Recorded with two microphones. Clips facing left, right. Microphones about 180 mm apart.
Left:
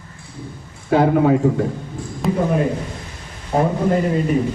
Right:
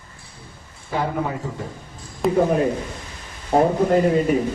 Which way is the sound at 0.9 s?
75° left (ahead or behind).